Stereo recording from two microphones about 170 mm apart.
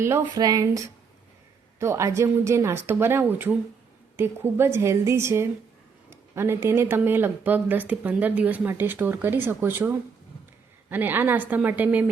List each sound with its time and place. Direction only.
0.0 s speech: 20° right (ahead or behind)